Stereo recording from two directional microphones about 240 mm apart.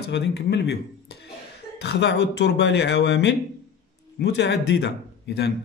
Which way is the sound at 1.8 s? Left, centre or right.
Left.